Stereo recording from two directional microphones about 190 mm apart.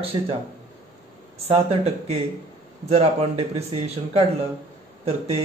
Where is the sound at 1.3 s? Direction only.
35° right (ahead or behind).